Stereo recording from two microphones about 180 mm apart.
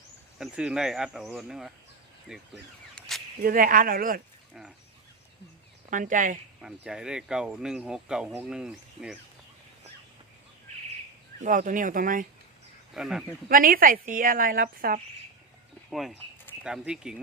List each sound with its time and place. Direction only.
0.3 s speech: 5° right (ahead or behind)
3.4 s speech: 50° right (ahead or behind)
5.9 s speech: 45° right (ahead or behind)
6.6 s speech: 5° right (ahead or behind)
11.4 s speech: 45° right (ahead or behind)
12.9 s speech: 5° right (ahead or behind)
13.5 s speech: 50° right (ahead or behind)
15.9 s speech: centre (ahead or behind)